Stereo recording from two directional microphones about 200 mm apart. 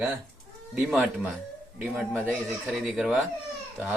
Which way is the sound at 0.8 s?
5° right (ahead or behind).